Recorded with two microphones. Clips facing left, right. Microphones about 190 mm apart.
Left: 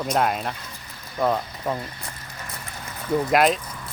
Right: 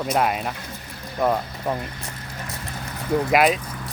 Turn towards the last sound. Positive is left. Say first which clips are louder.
# right 1 dB
turn(degrees=-5)  # may be behind; listen again after turning